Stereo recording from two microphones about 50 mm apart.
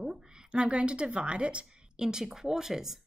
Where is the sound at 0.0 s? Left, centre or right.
Centre.